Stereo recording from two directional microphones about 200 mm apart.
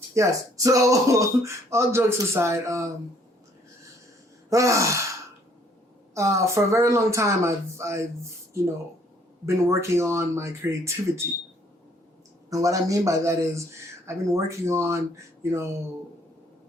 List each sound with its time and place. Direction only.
0.1 s speech: 15° right (ahead or behind)
4.4 s gasp: 15° right (ahead or behind)
6.1 s speech: 15° right (ahead or behind)
9.6 s speech: 15° right (ahead or behind)
12.5 s speech: 15° right (ahead or behind)